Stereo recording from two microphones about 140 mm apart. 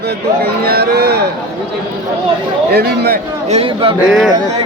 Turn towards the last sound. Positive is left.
turn(degrees=-5)  # may be behind; listen again after turning